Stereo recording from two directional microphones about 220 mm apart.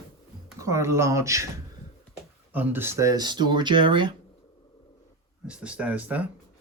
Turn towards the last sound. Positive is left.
turn(degrees=-5)  # may be behind; listen again after turning